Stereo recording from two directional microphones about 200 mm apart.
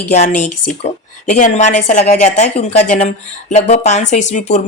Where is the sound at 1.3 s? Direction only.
35° left (ahead or behind).